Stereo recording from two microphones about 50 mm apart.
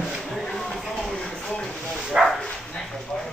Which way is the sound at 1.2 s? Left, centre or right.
Centre.